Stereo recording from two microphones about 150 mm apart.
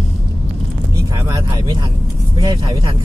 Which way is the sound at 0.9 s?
25° right (ahead or behind).